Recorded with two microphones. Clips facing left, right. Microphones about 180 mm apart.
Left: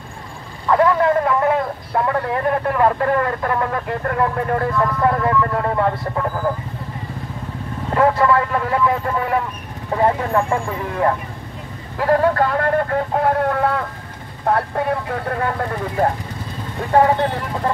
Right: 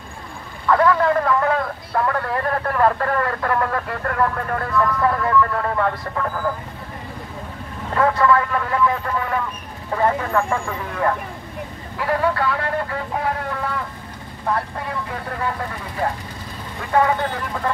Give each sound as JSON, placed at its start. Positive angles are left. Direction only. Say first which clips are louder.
{"t": 0.7, "sound": "speech", "louder": "left 1 dB", "side_deg": 20}
{"t": 7.9, "sound": "speech", "louder": "left 2 dB", "side_deg": 25}
{"t": 12.0, "sound": "a man's voice", "louder": "left 5 dB", "side_deg": 45}
{"t": 16.9, "sound": "speech", "louder": "left 4 dB", "side_deg": 35}